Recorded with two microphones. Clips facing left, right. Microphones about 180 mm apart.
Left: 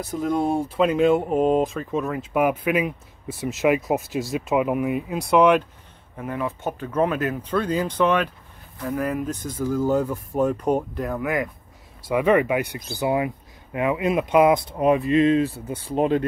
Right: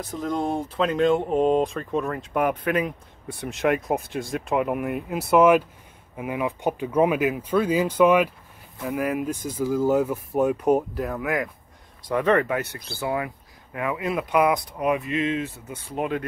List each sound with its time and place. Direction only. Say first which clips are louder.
0.0 s speech: left 3 dB; 10° left (ahead or behind); by 16.3 s 30° left (ahead or behind)